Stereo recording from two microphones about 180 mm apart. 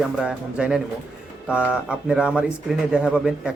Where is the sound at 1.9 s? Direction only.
5° right (ahead or behind).